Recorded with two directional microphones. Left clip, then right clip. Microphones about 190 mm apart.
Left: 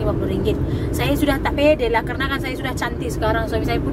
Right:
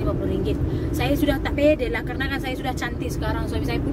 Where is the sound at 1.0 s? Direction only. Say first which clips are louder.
Left 3 dB; 20° left (ahead or behind).